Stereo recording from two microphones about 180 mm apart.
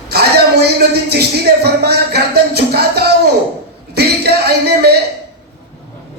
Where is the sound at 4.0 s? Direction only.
60° right (ahead or behind).